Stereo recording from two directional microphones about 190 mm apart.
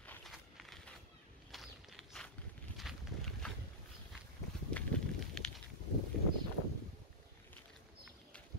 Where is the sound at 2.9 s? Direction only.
Centre (ahead or behind).